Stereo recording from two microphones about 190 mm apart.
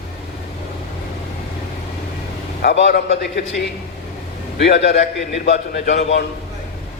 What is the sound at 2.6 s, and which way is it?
Speech, 65° left (ahead or behind).